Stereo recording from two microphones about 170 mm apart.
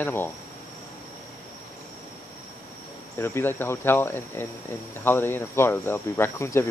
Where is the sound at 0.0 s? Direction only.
15° left (ahead or behind).